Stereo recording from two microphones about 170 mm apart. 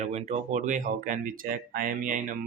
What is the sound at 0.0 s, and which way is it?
Speech, 40° right (ahead or behind).